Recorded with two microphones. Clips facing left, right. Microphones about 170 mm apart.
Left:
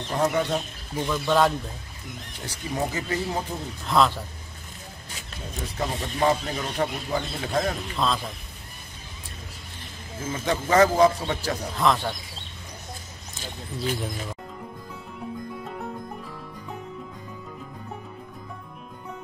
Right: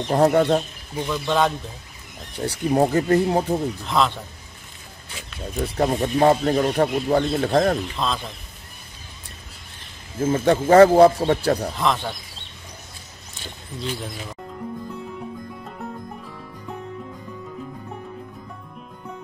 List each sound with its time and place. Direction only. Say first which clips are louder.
0.1 s speech: right 7 dB; 50° right (ahead or behind)
1.0 s speech: even; centre (ahead or behind)
2.4 s speech: right 10 dB; 65° right (ahead or behind)
3.8 s speech: left 3 dB; centre (ahead or behind)
5.6 s speech: right 9 dB; 55° right (ahead or behind)
8.0 s speech: even; centre (ahead or behind)
10.2 s speech: right 9 dB; 55° right (ahead or behind)
11.7 s speech: even; centre (ahead or behind)
13.7 s speech: left 1 dB; centre (ahead or behind)
15.1 s music: even; centre (ahead or behind)